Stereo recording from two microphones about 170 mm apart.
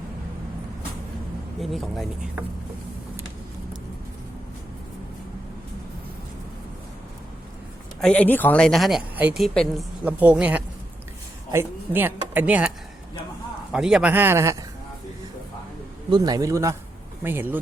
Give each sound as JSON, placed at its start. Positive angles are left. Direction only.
{"t": 1.6, "sound": "speech", "side_deg": 0}
{"t": 8.0, "sound": "speech", "side_deg": 10}
{"t": 13.7, "sound": "speech", "side_deg": -5}
{"t": 16.0, "sound": "a man's voice", "side_deg": -25}